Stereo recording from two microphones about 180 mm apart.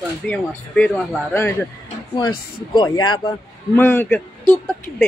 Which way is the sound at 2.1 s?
25° left (ahead or behind).